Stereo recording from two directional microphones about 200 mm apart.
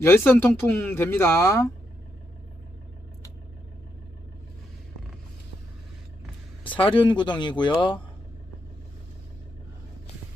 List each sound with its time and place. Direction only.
0.0 s speech: 10° left (ahead or behind)
6.7 s speech: 25° left (ahead or behind)